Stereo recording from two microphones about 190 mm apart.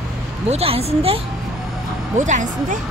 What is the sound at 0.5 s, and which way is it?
A woman's voice, 30° right (ahead or behind).